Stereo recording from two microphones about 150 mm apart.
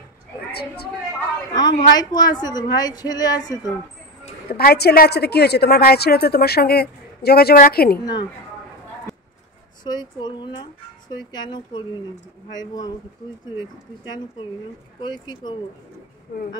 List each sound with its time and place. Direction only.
0.5 s a woman's voice: 90° left
1.5 s a woman's voice: 30° left (ahead or behind)
4.5 s a woman's voice: 90° left
8.0 s a woman's voice: 30° left (ahead or behind)
9.8 s a woman's voice: 30° left (ahead or behind)
15.0 s a woman's voice: 30° left (ahead or behind)